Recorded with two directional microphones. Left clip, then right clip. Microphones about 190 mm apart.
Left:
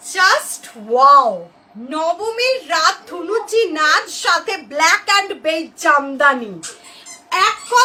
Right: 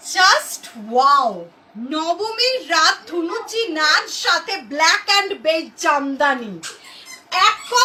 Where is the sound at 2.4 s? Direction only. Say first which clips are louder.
Right 1 dB; 30° left (ahead or behind).